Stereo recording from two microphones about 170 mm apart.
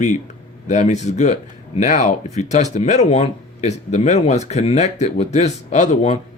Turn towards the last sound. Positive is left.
turn(degrees=40)  # may be behind; listen again after turning